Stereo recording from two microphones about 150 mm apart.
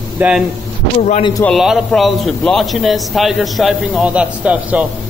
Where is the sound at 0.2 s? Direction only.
10° right (ahead or behind).